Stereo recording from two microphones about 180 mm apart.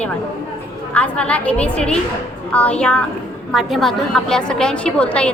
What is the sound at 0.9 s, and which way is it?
A woman's voice, 10° left (ahead or behind).